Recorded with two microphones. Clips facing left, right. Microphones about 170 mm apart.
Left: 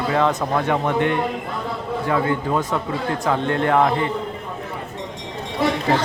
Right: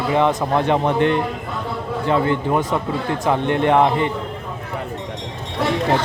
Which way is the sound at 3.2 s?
20° right (ahead or behind).